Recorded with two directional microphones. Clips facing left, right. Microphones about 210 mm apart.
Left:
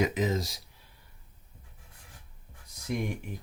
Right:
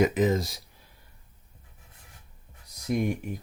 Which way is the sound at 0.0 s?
50° right (ahead or behind).